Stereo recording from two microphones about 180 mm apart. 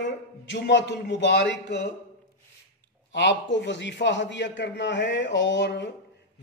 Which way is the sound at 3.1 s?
85° left.